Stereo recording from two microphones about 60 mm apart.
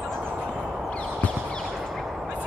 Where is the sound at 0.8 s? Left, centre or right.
Left.